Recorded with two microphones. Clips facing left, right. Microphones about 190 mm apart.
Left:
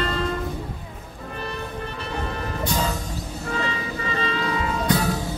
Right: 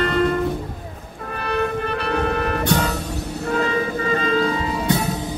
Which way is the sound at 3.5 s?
50° right (ahead or behind).